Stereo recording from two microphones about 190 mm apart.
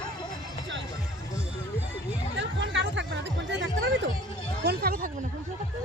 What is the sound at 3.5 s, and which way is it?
Music, 65° right (ahead or behind).